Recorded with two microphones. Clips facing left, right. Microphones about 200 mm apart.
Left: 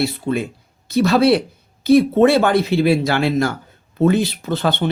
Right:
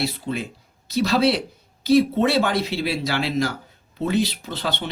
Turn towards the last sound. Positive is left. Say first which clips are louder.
# left 8 dB
turn(degrees=50)  # may be behind; listen again after turning